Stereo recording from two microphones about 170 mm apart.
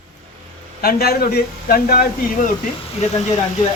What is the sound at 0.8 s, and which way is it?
A man's voice, 60° left (ahead or behind).